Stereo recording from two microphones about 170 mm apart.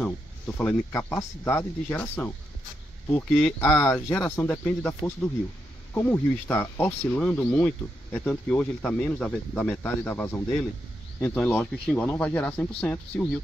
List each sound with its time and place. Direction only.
0.6 s speech: 10° left (ahead or behind)
3.4 s speech: 20° left (ahead or behind)